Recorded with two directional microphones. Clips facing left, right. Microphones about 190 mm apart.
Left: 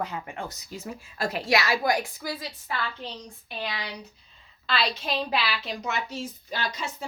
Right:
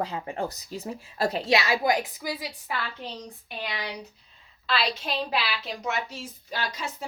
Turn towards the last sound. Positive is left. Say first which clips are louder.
# left 1 dB
turn(degrees=-5)  # may be behind; listen again after turning